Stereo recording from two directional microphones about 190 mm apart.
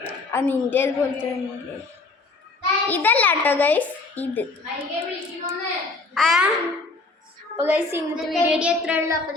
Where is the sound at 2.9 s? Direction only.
10° left (ahead or behind).